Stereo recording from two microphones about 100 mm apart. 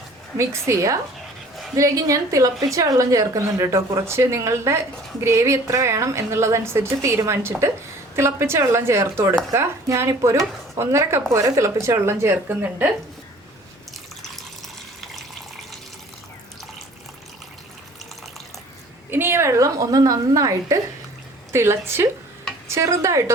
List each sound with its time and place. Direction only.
0.3 s a woman's voice: 30° right (ahead or behind)
19.1 s a woman's voice: 25° right (ahead or behind)